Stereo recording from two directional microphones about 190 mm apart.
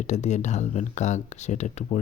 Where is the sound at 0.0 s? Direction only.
40° left (ahead or behind).